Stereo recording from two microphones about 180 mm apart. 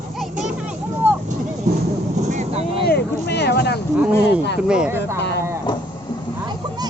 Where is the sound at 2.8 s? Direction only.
65° left (ahead or behind).